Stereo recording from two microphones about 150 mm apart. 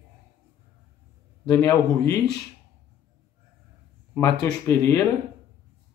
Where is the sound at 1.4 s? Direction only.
25° left (ahead or behind).